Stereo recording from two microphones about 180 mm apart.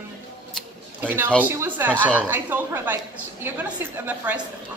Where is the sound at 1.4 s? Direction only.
10° right (ahead or behind).